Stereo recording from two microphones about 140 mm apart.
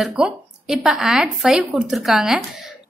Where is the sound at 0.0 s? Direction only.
5° right (ahead or behind).